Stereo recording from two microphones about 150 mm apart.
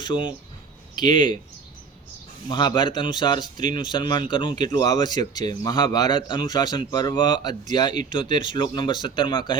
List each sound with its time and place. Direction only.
0.0 s a man's voice: 30° left (ahead or behind)
2.5 s a man's voice: 30° left (ahead or behind)